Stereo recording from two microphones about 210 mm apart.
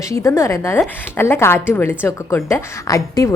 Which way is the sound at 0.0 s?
15° left (ahead or behind).